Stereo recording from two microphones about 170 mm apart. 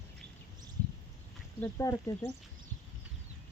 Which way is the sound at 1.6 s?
15° left (ahead or behind).